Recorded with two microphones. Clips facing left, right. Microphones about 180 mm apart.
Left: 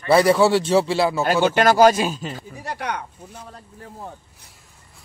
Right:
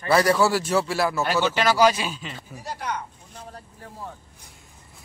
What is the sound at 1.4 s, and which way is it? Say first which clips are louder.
Speech: left 6 dB; 50° left (ahead or behind).